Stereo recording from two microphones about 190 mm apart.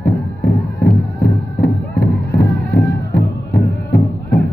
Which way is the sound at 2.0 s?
60° left (ahead or behind).